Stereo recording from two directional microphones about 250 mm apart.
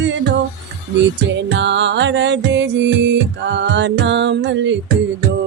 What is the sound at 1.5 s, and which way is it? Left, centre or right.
Music, right.